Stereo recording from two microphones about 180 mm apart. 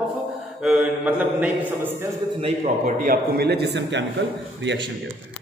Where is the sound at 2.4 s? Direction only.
35° right (ahead or behind).